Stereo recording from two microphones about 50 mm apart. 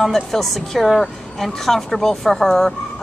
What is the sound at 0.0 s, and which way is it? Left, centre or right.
Speech, centre.